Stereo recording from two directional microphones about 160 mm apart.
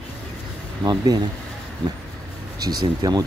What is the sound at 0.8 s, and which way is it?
Speech, 25° right (ahead or behind).